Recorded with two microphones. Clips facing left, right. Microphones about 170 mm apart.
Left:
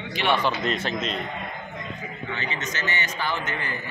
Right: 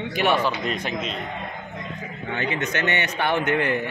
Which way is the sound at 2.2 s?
55° right (ahead or behind).